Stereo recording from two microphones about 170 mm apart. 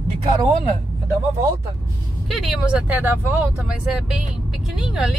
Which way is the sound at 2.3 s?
Centre (ahead or behind).